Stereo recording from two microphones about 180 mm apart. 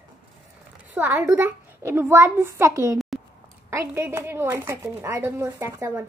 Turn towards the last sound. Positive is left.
turn(degrees=-15)  # may be behind; listen again after turning